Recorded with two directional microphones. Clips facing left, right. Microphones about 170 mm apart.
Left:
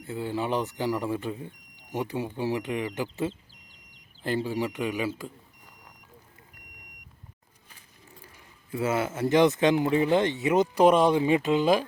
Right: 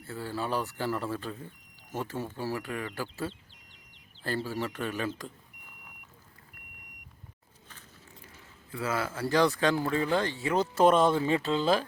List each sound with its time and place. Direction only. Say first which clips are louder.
0.0 s speech: left 5 dB; 20° left (ahead or behind)
8.7 s speech: left 5 dB; 25° left (ahead or behind)